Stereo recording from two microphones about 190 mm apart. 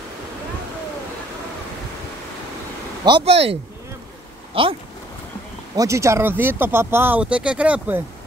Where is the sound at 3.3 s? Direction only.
30° right (ahead or behind).